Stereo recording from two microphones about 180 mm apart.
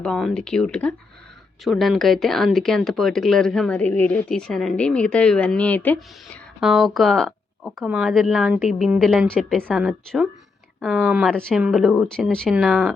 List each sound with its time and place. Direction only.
0.0 s speech: centre (ahead or behind)
6.6 s speech: centre (ahead or behind)